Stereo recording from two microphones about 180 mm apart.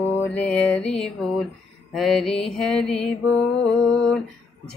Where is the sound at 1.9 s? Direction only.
Centre (ahead or behind).